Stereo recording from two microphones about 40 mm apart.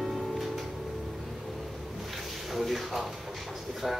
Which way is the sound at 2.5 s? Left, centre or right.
Centre.